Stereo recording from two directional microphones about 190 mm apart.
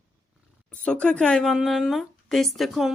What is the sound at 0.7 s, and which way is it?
Speech, 5° left (ahead or behind).